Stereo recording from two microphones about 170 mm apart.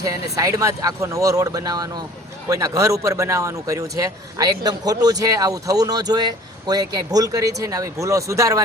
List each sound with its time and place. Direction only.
0.3 s a man's voice: 20° right (ahead or behind)